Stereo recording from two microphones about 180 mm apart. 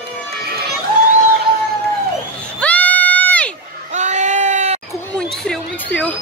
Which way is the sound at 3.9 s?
40° right (ahead or behind).